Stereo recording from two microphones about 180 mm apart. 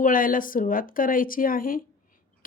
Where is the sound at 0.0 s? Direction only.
50° left (ahead or behind).